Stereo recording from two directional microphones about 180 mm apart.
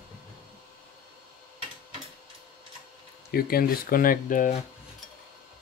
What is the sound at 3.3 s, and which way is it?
Speech, 55° left (ahead or behind).